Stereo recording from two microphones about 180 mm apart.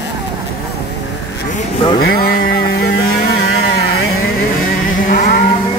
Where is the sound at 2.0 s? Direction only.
60° left (ahead or behind).